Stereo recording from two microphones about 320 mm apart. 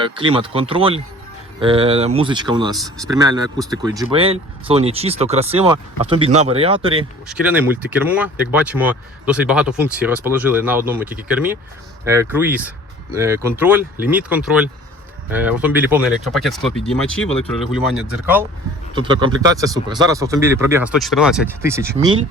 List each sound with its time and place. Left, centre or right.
0.0 s speech: centre
7.3 s speech: centre
18.9 s speech: centre